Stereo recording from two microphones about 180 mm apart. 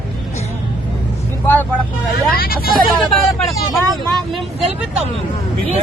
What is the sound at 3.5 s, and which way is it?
Speech, centre (ahead or behind).